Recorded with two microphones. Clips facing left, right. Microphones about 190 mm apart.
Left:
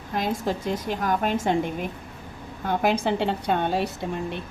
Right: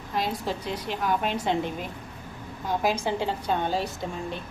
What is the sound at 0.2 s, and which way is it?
A woman's voice, 50° left (ahead or behind).